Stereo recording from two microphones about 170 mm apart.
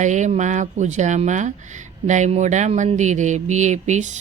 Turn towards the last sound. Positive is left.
turn(degrees=-45)  # may be behind; listen again after turning